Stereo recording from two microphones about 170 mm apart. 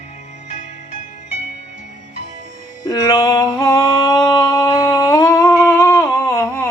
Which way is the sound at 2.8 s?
20° left (ahead or behind).